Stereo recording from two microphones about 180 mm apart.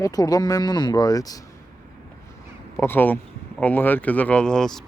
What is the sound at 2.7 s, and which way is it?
Speech, 10° left (ahead or behind).